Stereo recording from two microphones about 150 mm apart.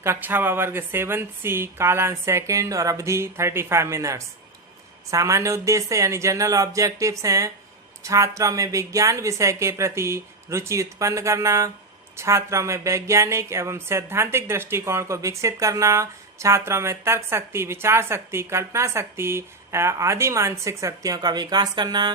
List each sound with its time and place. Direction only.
0.0 s speech: 15° right (ahead or behind)